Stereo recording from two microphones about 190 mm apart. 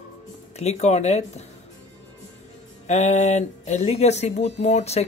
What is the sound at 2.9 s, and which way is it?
Speech, 40° left (ahead or behind).